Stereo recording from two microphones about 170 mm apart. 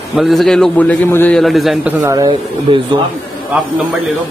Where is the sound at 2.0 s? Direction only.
20° right (ahead or behind).